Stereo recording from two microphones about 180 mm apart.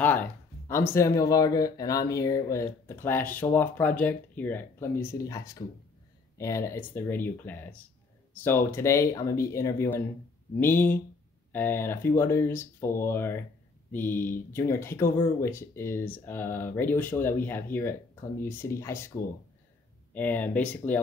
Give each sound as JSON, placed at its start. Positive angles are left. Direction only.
{"t": 0.0, "sound": "speech", "side_deg": 10}
{"t": 20.2, "sound": "speech", "side_deg": 10}